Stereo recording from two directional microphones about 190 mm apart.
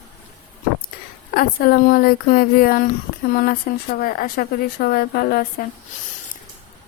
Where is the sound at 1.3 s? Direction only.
50° left (ahead or behind).